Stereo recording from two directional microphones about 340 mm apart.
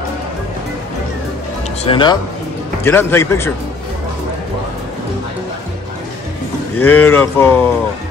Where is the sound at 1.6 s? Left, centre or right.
Centre.